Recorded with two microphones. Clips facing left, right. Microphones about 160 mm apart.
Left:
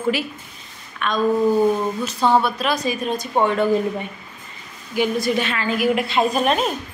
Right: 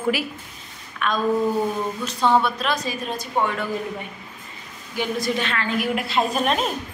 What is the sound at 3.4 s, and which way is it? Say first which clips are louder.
Speech: left 5 dB; 30° left (ahead or behind).